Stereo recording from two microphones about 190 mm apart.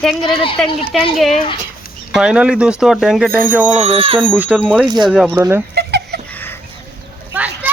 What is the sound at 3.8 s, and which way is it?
Speech, 30° right (ahead or behind).